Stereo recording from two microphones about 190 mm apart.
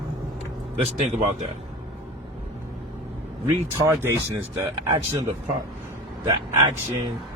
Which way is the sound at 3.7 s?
15° right (ahead or behind).